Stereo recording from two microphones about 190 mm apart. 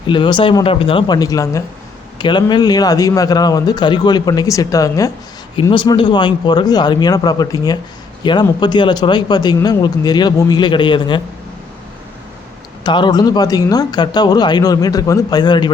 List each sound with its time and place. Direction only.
0.1 s a man's voice: 25° left (ahead or behind)
12.8 s a man's voice: 25° left (ahead or behind)